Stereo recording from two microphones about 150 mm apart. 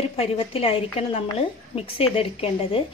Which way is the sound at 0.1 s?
40° left (ahead or behind).